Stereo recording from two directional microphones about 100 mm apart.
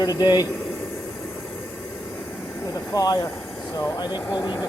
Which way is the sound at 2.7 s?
35° left (ahead or behind).